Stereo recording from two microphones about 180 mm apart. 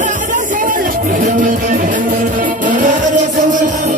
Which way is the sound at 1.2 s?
50° right (ahead or behind).